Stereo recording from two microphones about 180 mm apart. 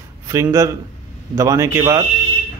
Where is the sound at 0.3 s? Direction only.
15° right (ahead or behind).